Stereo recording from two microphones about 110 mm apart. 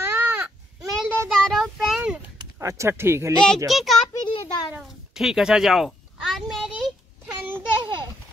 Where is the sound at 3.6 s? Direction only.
Centre (ahead or behind).